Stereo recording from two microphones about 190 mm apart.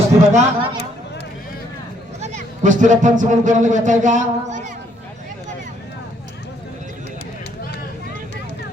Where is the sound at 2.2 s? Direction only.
40° right (ahead or behind).